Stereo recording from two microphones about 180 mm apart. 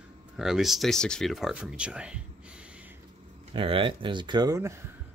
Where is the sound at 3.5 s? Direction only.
30° right (ahead or behind).